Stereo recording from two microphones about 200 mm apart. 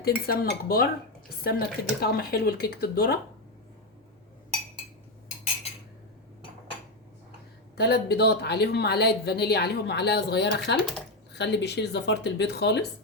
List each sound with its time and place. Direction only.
0.0 s speech: 50° left (ahead or behind)
7.8 s speech: 55° left (ahead or behind)